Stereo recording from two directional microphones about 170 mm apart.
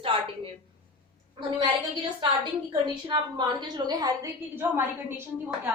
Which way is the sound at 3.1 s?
25° right (ahead or behind).